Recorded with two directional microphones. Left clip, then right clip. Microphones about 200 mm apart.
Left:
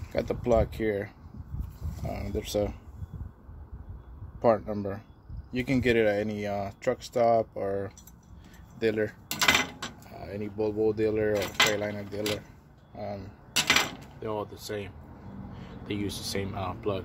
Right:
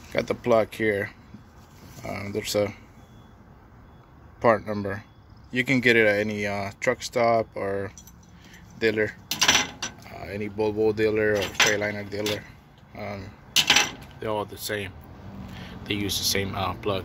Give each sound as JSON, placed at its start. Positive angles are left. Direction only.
{"t": 0.1, "sound": "mechanisms", "side_deg": 5}
{"t": 4.4, "sound": "mechanisms", "side_deg": 5}
{"t": 8.7, "sound": "speech", "side_deg": 10}
{"t": 9.5, "sound": "a sound", "side_deg": 20}
{"t": 10.0, "sound": "mechanisms", "side_deg": 5}
{"t": 15.6, "sound": "speech", "side_deg": 0}